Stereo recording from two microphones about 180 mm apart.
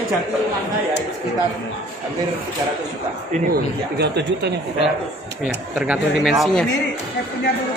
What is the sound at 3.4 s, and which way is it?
Speech, 65° right (ahead or behind).